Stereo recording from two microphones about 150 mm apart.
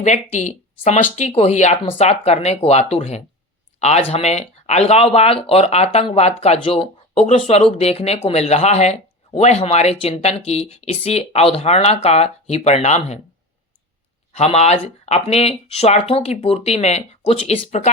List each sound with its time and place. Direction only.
0.0 s speech: 50° left (ahead or behind)
14.3 s speech: 45° left (ahead or behind)